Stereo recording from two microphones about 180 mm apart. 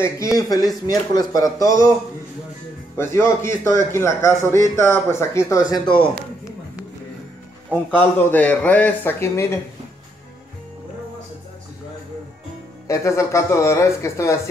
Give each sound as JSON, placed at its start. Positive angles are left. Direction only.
{"t": 0.4, "sound": "speech", "side_deg": 20}
{"t": 3.0, "sound": "speech", "side_deg": 15}
{"t": 5.7, "sound": "speech", "side_deg": 25}
{"t": 7.7, "sound": "speech", "side_deg": 10}
{"t": 12.8, "sound": "speech", "side_deg": 15}